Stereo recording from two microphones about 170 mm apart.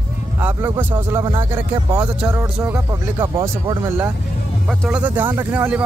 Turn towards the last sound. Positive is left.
turn(degrees=-10)  # may be behind; listen again after turning